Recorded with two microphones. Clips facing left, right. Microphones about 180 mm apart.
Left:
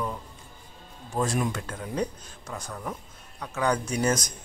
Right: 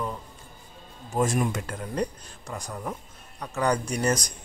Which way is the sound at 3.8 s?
5° left (ahead or behind).